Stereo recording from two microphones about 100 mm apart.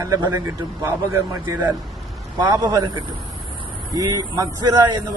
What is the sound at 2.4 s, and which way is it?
A man's voice, 45° right (ahead or behind).